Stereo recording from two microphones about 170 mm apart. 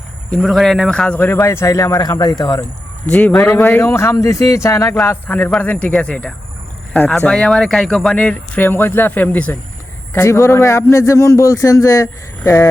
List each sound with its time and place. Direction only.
0.3 s speech: centre (ahead or behind); by 2.6 s 25° left (ahead or behind)
3.1 s speech: 10° left (ahead or behind)